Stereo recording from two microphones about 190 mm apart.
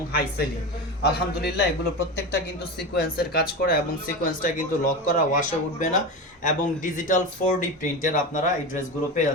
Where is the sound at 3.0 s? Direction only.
55° left (ahead or behind).